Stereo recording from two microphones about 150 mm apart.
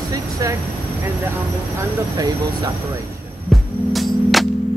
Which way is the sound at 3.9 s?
Centre (ahead or behind).